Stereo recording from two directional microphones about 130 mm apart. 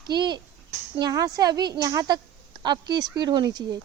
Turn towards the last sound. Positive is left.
turn(degrees=-35)  # may be behind; listen again after turning